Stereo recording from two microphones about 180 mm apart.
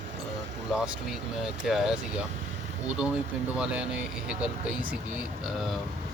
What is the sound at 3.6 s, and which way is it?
Speech, 5° right (ahead or behind).